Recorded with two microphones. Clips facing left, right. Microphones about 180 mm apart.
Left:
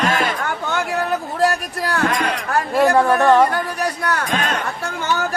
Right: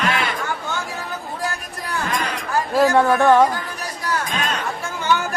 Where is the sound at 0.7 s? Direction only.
65° left (ahead or behind).